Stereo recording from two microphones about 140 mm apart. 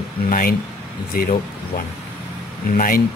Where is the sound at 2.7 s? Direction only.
85° left.